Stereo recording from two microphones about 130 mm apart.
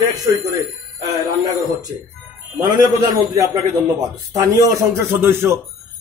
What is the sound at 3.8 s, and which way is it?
A man's voice, 25° right (ahead or behind).